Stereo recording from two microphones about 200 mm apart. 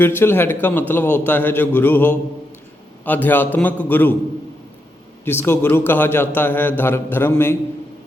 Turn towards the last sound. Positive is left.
turn(degrees=10)  # may be behind; listen again after turning